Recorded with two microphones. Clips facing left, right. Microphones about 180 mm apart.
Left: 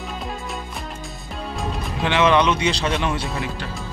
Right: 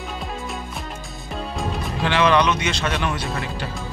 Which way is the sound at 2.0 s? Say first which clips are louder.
Left 1 dB; 20° left (ahead or behind).